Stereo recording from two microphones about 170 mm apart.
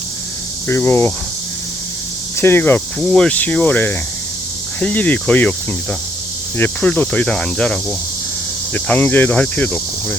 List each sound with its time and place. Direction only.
0.7 s speech: 15° left (ahead or behind)
2.4 s speech: 10° left (ahead or behind)
6.6 s speech: 10° left (ahead or behind)